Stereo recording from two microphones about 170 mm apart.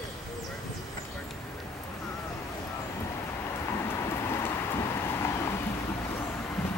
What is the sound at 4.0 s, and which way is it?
Vehicle, 15° left (ahead or behind).